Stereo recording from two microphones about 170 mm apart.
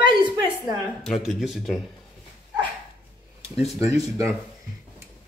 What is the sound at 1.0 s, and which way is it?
Speech, centre (ahead or behind).